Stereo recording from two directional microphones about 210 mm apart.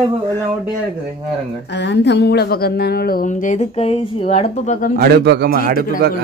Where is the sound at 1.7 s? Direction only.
55° left (ahead or behind); by 4.9 s 35° left (ahead or behind).